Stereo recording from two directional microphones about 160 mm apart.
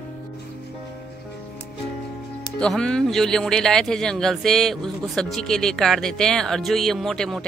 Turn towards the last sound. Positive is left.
turn(degrees=5)  # may be behind; listen again after turning